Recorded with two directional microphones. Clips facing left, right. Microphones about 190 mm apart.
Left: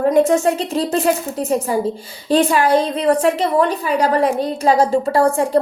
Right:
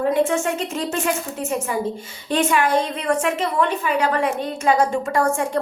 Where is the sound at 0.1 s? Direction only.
40° left (ahead or behind).